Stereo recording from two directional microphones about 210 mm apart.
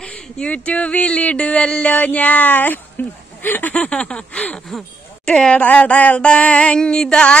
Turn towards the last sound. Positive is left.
turn(degrees=5)  # may be behind; listen again after turning